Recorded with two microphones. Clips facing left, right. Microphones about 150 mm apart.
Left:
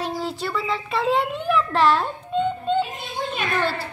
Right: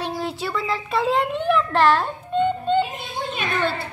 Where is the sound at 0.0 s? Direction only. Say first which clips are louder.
Even; 5° right (ahead or behind).